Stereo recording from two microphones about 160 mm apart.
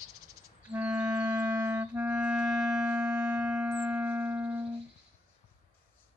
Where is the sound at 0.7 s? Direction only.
10° right (ahead or behind).